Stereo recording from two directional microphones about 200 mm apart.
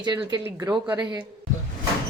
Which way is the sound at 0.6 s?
10° right (ahead or behind).